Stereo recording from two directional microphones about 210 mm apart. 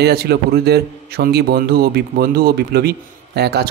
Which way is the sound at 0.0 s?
50° right (ahead or behind).